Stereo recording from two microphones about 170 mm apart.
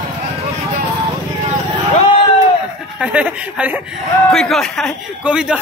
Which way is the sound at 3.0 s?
5° right (ahead or behind).